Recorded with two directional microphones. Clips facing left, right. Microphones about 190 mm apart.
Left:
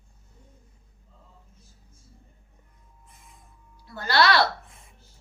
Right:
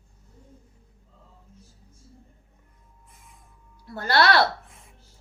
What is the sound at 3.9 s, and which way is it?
Speech, 55° right (ahead or behind).